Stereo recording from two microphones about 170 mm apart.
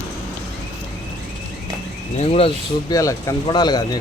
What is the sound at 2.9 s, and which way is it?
Speech, 20° left (ahead or behind).